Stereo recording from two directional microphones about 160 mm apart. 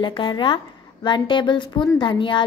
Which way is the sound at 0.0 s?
30° left (ahead or behind).